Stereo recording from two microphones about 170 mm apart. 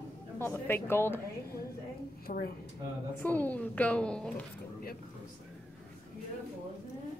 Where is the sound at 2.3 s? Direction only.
50° left (ahead or behind).